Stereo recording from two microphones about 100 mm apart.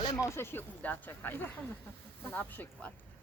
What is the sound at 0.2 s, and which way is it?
Speech, 25° left (ahead or behind).